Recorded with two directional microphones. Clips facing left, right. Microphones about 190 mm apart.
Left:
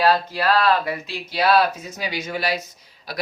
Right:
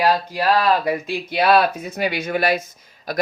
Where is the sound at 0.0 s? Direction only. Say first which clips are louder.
Even; 15° right (ahead or behind).